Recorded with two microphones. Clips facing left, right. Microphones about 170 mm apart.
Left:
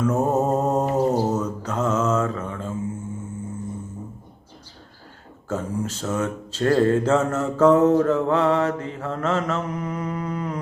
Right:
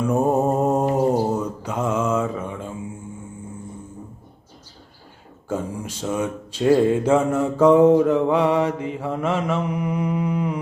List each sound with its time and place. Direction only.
0.0 s mantra: 15° right (ahead or behind)
5.5 s speech: 10° right (ahead or behind)